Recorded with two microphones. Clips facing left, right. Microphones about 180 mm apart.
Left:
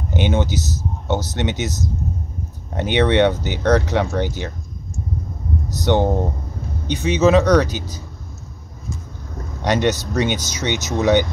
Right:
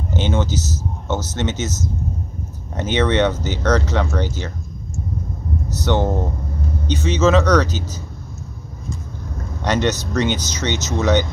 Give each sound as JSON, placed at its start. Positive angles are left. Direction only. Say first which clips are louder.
{"t": 0.1, "sound": "speech", "louder": "left 1 dB", "side_deg": 15}
{"t": 5.7, "sound": "speech", "louder": "left 2 dB", "side_deg": 15}
{"t": 9.6, "sound": "speech", "louder": "left 1 dB", "side_deg": 15}